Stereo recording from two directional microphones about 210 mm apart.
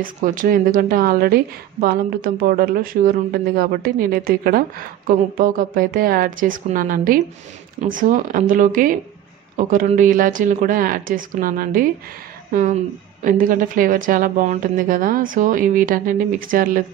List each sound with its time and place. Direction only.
0.0 s a woman's voice: 40° right (ahead or behind)
13.2 s speech: 40° right (ahead or behind)